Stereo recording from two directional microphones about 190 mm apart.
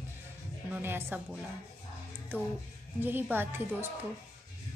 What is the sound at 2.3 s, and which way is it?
Speech, 10° right (ahead or behind).